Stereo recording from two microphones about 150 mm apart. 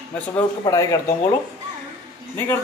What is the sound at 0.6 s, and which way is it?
Speech, 20° left (ahead or behind).